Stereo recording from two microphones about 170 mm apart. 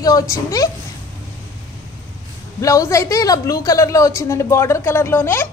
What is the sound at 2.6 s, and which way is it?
Speech, 20° left (ahead or behind).